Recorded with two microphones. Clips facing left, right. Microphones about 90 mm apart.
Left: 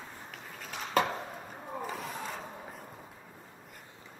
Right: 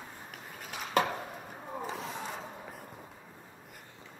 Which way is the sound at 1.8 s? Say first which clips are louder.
Even; 15° right (ahead or behind).